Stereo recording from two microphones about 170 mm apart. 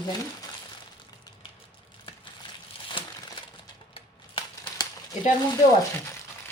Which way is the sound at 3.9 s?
30° left (ahead or behind).